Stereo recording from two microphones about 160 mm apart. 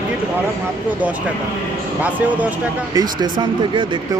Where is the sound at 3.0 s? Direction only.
30° right (ahead or behind).